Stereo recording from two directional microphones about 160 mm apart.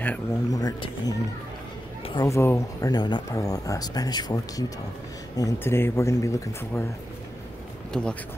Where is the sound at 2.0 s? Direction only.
30° left (ahead or behind).